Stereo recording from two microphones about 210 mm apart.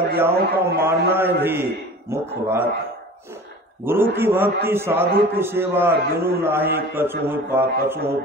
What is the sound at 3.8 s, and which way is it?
A man's voice, 10° right (ahead or behind).